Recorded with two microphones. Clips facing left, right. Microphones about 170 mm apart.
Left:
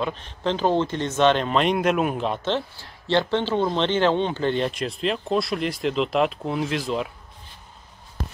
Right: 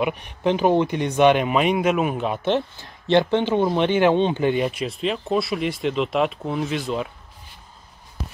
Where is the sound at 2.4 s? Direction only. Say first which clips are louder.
Right 4 dB; 15° right (ahead or behind); by 7.1 s centre (ahead or behind).